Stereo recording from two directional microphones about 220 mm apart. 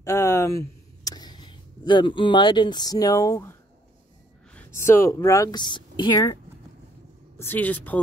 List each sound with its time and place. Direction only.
0.0 s a sound: 10° left (ahead or behind)
4.8 s speech: 10° left (ahead or behind)
7.3 s speech: 10° left (ahead or behind)